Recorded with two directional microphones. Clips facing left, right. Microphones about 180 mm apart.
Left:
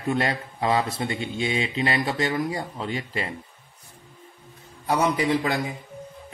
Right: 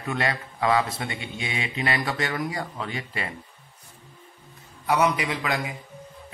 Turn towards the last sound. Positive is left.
turn(degrees=30)  # may be behind; listen again after turning